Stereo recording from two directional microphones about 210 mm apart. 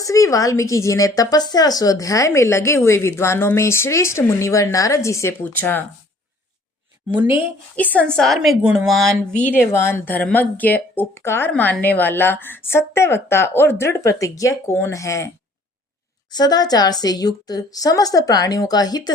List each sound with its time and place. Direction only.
0.0 s a woman's voice: 15° left (ahead or behind)
7.1 s speech: 10° right (ahead or behind)
7.8 s a woman's voice: 5° left (ahead or behind)
16.3 s a woman's voice: 20° left (ahead or behind)